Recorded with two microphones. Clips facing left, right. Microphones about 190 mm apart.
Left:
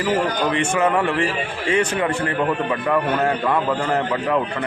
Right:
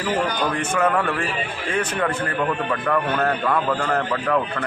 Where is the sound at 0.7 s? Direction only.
10° left (ahead or behind).